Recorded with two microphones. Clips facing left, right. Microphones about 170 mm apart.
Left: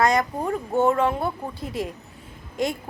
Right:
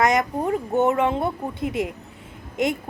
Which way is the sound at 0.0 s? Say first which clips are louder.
Right 1 dB; 20° right (ahead or behind).